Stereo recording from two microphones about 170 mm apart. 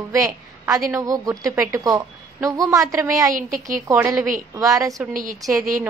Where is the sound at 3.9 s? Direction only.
15° right (ahead or behind).